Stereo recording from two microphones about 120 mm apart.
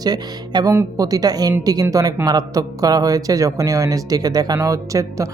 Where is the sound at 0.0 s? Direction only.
35° right (ahead or behind).